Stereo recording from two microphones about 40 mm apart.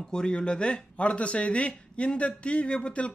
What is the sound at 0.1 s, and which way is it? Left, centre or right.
Speech, left.